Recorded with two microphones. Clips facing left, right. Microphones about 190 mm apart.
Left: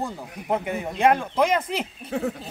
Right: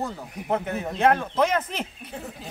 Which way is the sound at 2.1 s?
80° left.